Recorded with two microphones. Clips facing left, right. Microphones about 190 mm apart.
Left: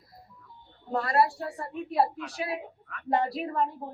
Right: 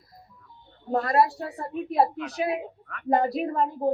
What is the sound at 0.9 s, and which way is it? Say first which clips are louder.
A woman's voice: right 3 dB; 40° right (ahead or behind).